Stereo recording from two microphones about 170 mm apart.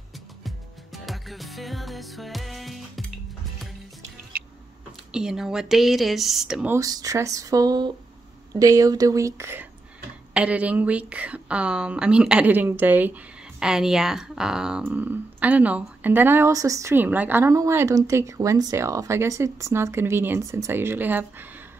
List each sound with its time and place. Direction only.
0.4 s music: centre (ahead or behind)
5.1 s speech: 5° right (ahead or behind)
6.7 s speech: 20° right (ahead or behind)